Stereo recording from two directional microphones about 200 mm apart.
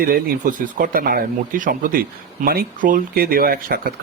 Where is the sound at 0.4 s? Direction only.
45° right (ahead or behind).